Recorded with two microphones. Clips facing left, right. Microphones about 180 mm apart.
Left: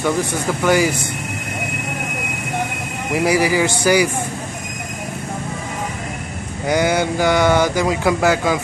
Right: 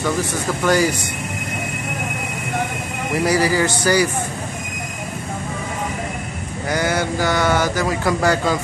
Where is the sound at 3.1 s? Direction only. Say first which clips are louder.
Left 1 dB; 15° left (ahead or behind).